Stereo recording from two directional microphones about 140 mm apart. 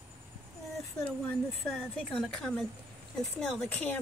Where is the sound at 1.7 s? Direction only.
5° left (ahead or behind).